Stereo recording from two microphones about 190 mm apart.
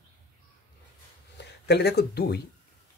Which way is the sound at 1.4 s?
60° left (ahead or behind).